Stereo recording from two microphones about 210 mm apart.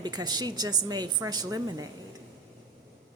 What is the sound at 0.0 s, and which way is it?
A woman's voice, 20° right (ahead or behind).